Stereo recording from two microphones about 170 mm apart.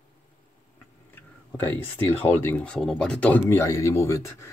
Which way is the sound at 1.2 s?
10° left (ahead or behind).